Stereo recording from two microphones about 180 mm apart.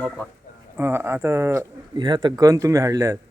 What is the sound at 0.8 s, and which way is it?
A man's voice, 15° right (ahead or behind).